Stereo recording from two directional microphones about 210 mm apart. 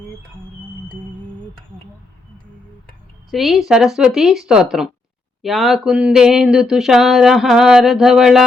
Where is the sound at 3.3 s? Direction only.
Centre (ahead or behind).